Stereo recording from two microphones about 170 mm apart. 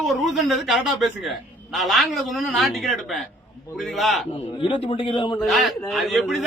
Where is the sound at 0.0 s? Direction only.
Centre (ahead or behind).